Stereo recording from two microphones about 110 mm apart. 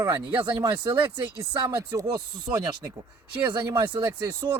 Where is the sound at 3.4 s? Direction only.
45° right (ahead or behind).